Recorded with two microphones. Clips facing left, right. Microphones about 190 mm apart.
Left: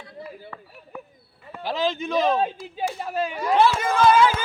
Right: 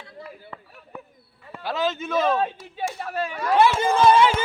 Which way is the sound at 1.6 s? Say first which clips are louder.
Left 1 dB; 15° left (ahead or behind).